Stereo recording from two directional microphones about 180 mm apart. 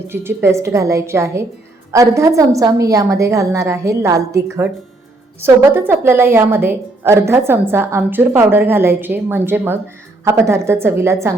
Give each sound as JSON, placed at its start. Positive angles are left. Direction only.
{"t": 0.1, "sound": "a woman's voice", "side_deg": -10}